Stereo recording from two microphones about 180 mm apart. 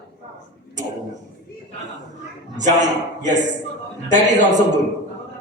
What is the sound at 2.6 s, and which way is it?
Speech, 40° right (ahead or behind).